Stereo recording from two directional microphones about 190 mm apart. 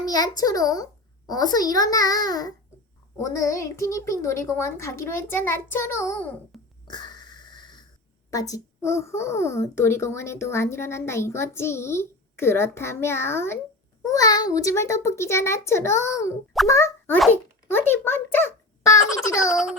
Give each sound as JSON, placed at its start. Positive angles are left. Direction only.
{"t": 0.0, "sound": "a child's voice", "side_deg": 20}
{"t": 6.8, "sound": "wheeze", "side_deg": 25}
{"t": 7.4, "sound": "a sound", "side_deg": 25}
{"t": 8.3, "sound": "a child's voice", "side_deg": 20}